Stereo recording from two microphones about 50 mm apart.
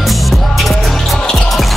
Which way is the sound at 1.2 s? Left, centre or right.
Centre.